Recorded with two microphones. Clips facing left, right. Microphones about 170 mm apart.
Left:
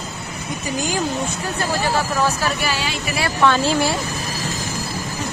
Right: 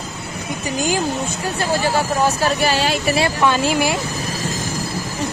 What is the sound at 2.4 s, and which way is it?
Speech, 40° right (ahead or behind).